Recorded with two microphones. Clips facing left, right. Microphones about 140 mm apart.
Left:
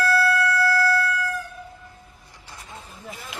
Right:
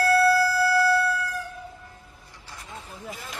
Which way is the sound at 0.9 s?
30° right (ahead or behind).